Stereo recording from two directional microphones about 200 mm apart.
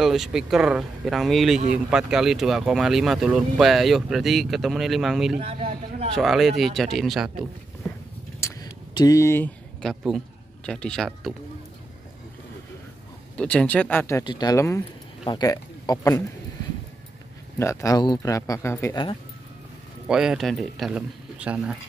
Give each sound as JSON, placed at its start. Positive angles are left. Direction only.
{"t": 0.0, "sound": "speech", "side_deg": 0}
{"t": 5.4, "sound": "a sound", "side_deg": -30}
{"t": 6.1, "sound": "speech", "side_deg": 0}
{"t": 8.4, "sound": "a sound", "side_deg": 15}
{"t": 13.4, "sound": "speech", "side_deg": 5}
{"t": 17.6, "sound": "speech", "side_deg": 15}
{"t": 20.1, "sound": "speech", "side_deg": -5}